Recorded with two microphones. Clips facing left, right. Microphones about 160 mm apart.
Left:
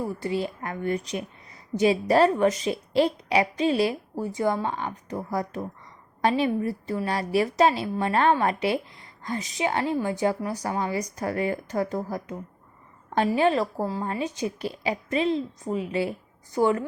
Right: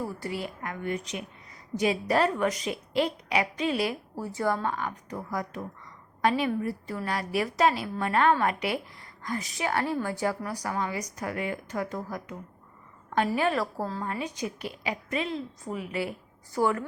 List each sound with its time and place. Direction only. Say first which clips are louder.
0.2 s a woman's voice: left 6 dB; 25° left (ahead or behind)
14.0 s a woman's voice: left 4 dB; 30° left (ahead or behind)